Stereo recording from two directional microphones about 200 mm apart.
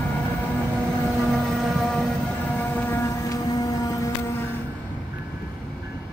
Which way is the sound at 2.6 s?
10° left (ahead or behind).